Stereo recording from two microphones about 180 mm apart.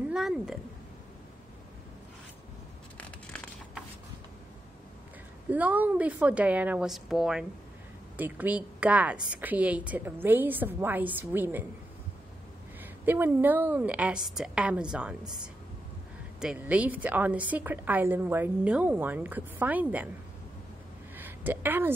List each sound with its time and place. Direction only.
0.1 s cat: centre (ahead or behind)
3.3 s a sound: 5° left (ahead or behind)
5.5 s a woman's voice: 10° right (ahead or behind)
13.0 s a woman's voice: 10° right (ahead or behind)
15.2 s speech: 25° right (ahead or behind)
16.3 s a woman's voice: 5° right (ahead or behind)
21.2 s a woman's voice: 10° right (ahead or behind)